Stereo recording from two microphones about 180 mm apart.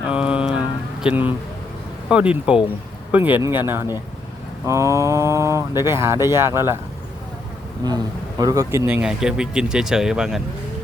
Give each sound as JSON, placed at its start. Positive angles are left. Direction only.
{"t": 0.1, "sound": "a sound", "side_deg": -5}
{"t": 1.0, "sound": "speech", "side_deg": -10}
{"t": 7.9, "sound": "speech", "side_deg": -20}